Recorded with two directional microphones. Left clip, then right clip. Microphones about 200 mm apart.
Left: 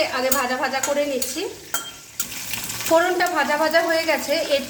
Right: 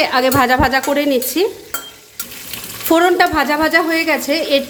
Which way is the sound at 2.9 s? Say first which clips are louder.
Right 6 dB; 45° right (ahead or behind).